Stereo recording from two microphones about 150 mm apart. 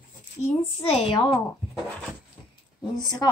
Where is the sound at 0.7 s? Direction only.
40° left (ahead or behind).